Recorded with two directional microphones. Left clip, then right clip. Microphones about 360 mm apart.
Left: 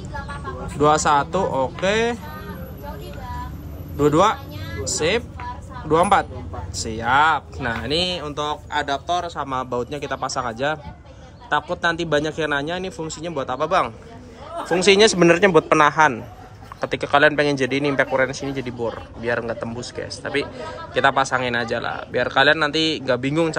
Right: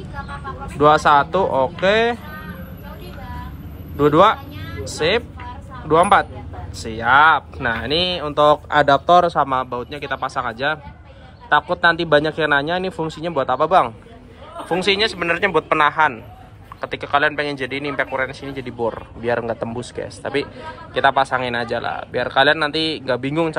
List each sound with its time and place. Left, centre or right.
0.7 s a man's voice: centre
3.9 s a man's voice: centre